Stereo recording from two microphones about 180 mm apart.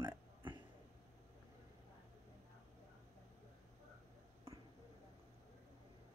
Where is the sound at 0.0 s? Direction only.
25° right (ahead or behind).